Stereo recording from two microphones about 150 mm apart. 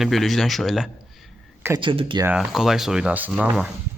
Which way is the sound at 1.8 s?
35° right (ahead or behind).